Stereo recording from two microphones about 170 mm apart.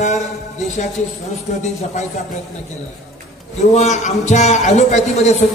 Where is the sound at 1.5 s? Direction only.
45° left (ahead or behind).